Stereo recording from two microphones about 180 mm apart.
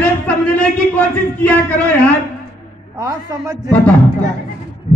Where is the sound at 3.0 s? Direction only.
15° right (ahead or behind).